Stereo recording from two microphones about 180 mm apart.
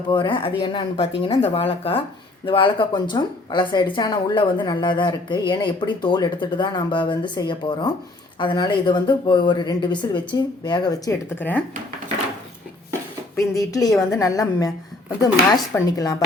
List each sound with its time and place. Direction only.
0.1 s speech: 25° left (ahead or behind)
11.3 s speech: 10° left (ahead or behind)
13.3 s speech: 20° left (ahead or behind)